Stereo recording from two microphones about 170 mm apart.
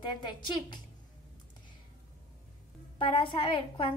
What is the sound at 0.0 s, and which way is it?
Speech, 25° left (ahead or behind).